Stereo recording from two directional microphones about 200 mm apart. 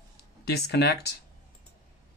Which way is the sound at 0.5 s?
55° left (ahead or behind).